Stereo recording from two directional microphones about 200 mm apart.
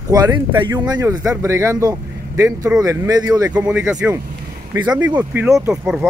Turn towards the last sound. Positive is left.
turn(degrees=-10)  # may be behind; listen again after turning